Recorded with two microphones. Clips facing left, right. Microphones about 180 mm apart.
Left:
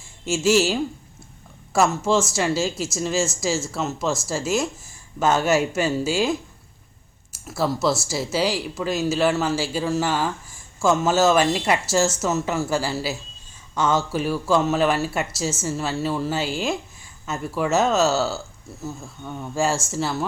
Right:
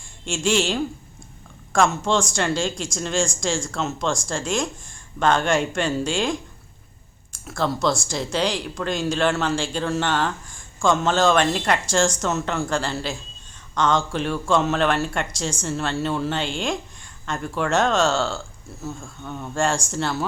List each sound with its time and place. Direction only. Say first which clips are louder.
0.0 s a woman's voice: left 4 dB; 5° left (ahead or behind)